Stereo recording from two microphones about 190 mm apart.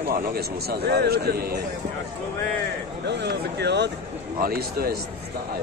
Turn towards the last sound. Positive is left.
turn(degrees=-50)  # may be behind; listen again after turning